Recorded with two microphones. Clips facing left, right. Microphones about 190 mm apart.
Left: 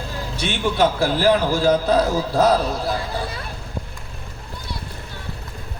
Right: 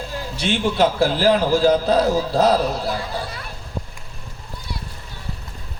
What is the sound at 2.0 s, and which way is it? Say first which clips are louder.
Speech: right 1 dB; 50° left (ahead or behind).